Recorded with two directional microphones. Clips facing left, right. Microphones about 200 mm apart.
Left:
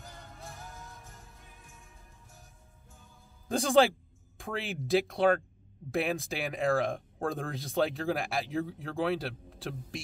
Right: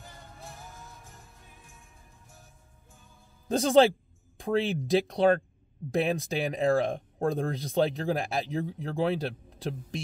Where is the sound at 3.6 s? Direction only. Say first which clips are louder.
Right 3 dB; 20° right (ahead or behind).